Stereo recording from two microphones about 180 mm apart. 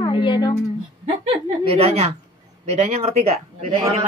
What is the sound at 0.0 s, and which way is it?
Speech, 25° left (ahead or behind).